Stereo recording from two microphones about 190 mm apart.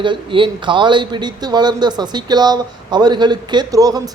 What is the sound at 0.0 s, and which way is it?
Speech, 25° right (ahead or behind).